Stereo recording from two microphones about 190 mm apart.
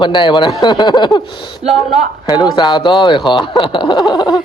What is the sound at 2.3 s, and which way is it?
Speech, 20° left (ahead or behind).